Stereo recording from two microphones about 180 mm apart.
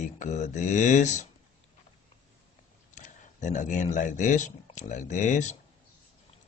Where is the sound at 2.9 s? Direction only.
45° left (ahead or behind).